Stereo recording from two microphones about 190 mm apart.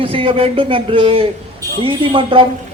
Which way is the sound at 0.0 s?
30° right (ahead or behind).